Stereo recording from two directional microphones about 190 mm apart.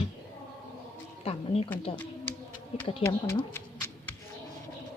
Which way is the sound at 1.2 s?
30° left (ahead or behind).